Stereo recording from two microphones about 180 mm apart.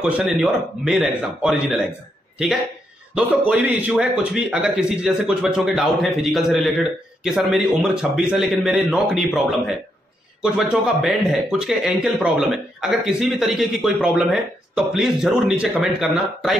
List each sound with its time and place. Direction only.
0.0 s a man's voice: 5° right (ahead or behind)
3.2 s a man's voice: 10° right (ahead or behind)